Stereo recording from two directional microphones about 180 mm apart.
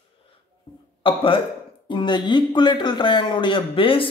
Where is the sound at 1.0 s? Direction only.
30° left (ahead or behind).